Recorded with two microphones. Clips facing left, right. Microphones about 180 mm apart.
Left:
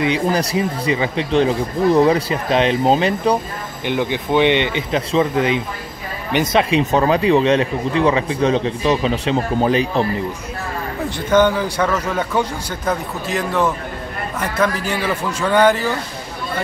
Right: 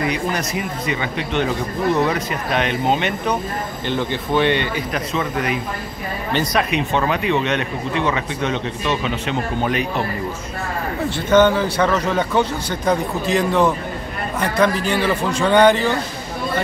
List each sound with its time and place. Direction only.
0.0 s speech: 30° left (ahead or behind)
3.8 s speech: 15° left (ahead or behind)
6.8 s speech: 35° left (ahead or behind)
11.1 s a man's voice: 10° left (ahead or behind)